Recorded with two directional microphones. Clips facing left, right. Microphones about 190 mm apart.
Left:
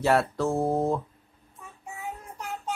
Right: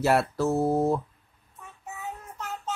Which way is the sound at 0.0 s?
5° right (ahead or behind).